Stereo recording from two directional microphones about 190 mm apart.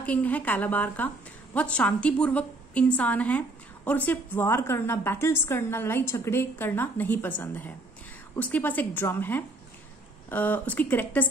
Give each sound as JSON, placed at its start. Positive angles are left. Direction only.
{"t": 0.0, "sound": "a woman's voice", "side_deg": 10}